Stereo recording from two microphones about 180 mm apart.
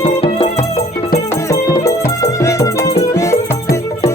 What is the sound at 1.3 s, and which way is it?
Music, 15° left (ahead or behind).